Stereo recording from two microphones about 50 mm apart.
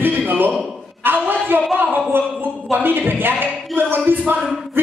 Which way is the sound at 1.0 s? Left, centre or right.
Right.